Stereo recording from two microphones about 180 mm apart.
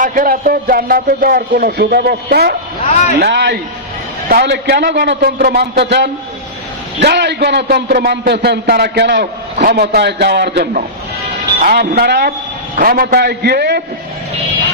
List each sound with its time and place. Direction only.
0.0 s a man's voice: 50° right (ahead or behind)